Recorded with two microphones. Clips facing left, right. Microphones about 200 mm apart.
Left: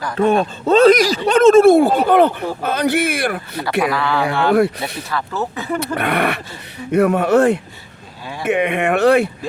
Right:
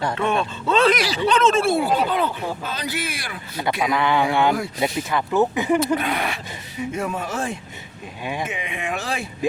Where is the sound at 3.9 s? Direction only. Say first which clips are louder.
Left 1 dB; 20° right (ahead or behind).